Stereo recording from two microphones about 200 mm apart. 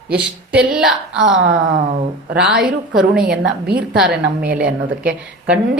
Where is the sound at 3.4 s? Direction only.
60° right (ahead or behind).